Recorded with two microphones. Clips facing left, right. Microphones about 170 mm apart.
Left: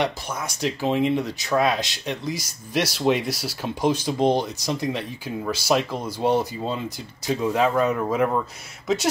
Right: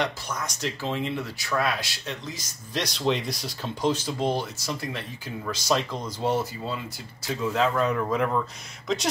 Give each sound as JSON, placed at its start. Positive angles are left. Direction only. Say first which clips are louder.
{"t": 0.0, "sound": "speech", "louder": "left 3 dB", "side_deg": 10}
{"t": 7.4, "sound": "speech", "louder": "left 3 dB", "side_deg": 15}